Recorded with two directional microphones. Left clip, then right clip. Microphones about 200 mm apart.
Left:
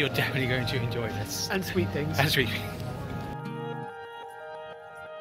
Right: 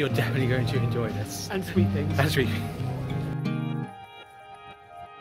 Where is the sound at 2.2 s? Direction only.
35° right (ahead or behind).